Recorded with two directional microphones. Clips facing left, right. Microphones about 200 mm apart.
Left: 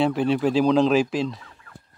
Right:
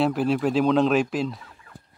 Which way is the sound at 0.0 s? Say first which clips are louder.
Left 1 dB; centre (ahead or behind).